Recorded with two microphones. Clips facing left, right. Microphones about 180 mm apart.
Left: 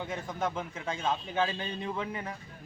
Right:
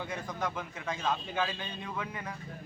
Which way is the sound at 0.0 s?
25° left (ahead or behind).